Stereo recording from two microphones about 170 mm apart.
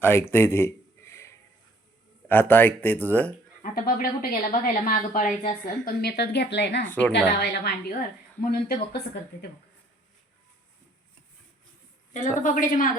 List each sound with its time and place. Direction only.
0.0 s a sound: 15° left (ahead or behind)
2.2 s a man's voice: 10° left (ahead or behind)
3.6 s speech: 55° left (ahead or behind); by 6.8 s 85° left
6.8 s a man's voice: 10° left (ahead or behind)
7.1 s a woman's voice: 75° left (ahead or behind)
8.4 s speech: 60° left (ahead or behind)
12.1 s a woman's voice: 50° left (ahead or behind)